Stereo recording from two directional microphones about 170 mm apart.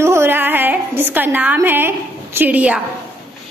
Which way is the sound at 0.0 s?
15° right (ahead or behind).